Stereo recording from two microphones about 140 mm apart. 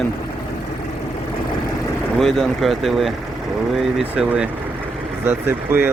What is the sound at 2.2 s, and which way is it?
Speech, centre (ahead or behind).